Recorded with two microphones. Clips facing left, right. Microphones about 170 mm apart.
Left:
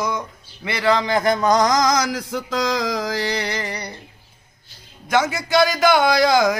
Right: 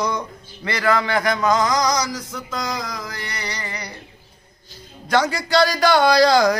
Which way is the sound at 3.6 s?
40° left (ahead or behind).